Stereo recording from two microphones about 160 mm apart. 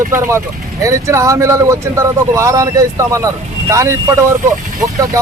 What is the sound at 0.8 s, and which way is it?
A man's voice, 20° right (ahead or behind).